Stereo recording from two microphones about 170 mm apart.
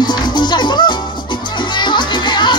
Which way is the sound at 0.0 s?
25° left (ahead or behind).